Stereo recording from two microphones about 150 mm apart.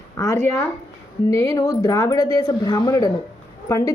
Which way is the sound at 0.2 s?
20° left (ahead or behind).